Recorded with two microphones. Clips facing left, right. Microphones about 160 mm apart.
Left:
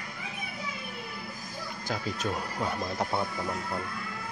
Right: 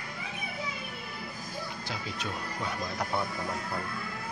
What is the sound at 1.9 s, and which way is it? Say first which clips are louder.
Speech: left 9 dB; 45° left (ahead or behind).